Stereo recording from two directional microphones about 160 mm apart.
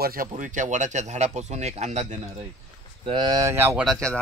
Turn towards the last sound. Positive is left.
turn(degrees=5)  # may be behind; listen again after turning